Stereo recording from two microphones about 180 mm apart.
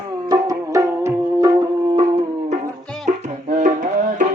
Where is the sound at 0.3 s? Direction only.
20° right (ahead or behind).